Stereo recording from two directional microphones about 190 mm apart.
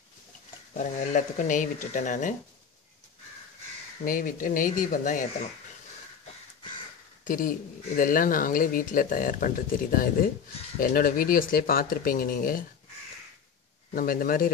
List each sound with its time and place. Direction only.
0.7 s speech: 40° left (ahead or behind)
4.0 s speech: 45° left (ahead or behind)
7.2 s speech: 45° left (ahead or behind)
13.9 s speech: 50° left (ahead or behind)